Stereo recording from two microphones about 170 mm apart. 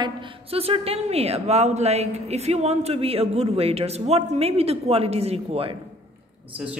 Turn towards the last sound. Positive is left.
turn(degrees=-35)  # may be behind; listen again after turning